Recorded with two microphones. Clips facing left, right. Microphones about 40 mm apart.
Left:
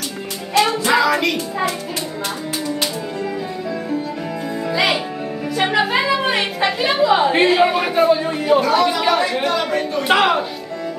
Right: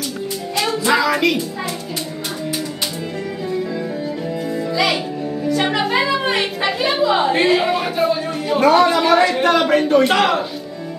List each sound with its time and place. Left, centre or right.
0.8 s music: centre
4.7 s music: centre
5.5 s a sound: centre
7.4 s speech: centre
8.5 s a man's voice: right
10.0 s speech: centre